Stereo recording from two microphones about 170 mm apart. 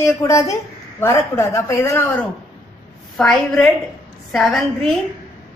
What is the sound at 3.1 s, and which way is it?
A woman's voice, 5° left (ahead or behind).